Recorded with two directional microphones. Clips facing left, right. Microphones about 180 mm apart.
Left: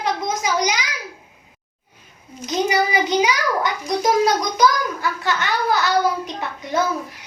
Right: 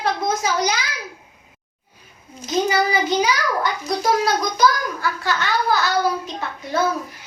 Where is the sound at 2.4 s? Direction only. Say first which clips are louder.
Even; 20° left (ahead or behind).